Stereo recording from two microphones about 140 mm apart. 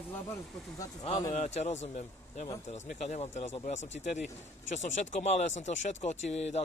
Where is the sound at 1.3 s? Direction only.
55° left (ahead or behind).